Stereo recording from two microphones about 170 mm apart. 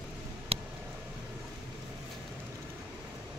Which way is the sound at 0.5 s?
35° right (ahead or behind).